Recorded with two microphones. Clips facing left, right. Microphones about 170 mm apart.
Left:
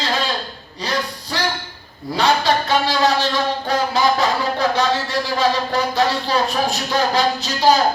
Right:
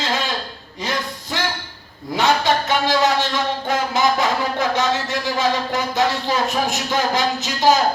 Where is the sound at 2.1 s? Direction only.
20° right (ahead or behind).